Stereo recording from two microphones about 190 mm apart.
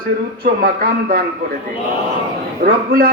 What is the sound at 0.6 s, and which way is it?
Speech, 50° right (ahead or behind).